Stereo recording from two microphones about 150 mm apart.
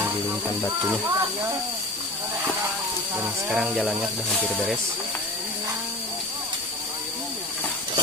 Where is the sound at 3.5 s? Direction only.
Centre (ahead or behind).